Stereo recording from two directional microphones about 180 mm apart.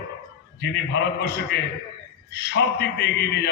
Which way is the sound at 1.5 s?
70° left (ahead or behind).